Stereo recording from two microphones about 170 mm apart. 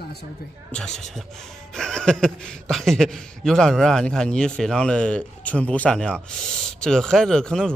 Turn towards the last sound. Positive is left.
turn(degrees=5)  # may be behind; listen again after turning